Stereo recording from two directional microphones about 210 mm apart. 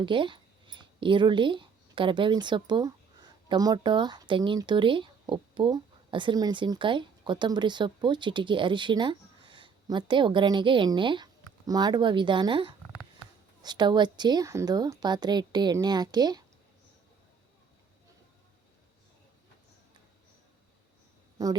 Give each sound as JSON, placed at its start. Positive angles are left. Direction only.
{"t": 0.0, "sound": "a woman's voice", "side_deg": -25}
{"t": 21.4, "sound": "speech", "side_deg": -15}